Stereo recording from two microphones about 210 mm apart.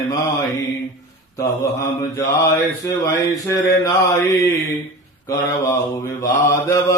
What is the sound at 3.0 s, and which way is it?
Mantra, 15° left (ahead or behind).